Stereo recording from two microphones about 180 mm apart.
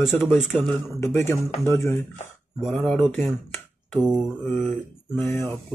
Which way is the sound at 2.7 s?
10° left (ahead or behind).